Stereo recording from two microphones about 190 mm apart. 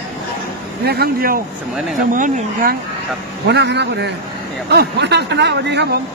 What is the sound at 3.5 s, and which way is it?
Speech, 65° right (ahead or behind).